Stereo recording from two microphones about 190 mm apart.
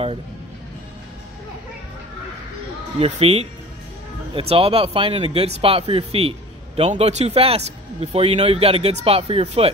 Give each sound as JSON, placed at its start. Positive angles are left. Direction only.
{"t": 3.0, "sound": "a man's voice", "side_deg": -30}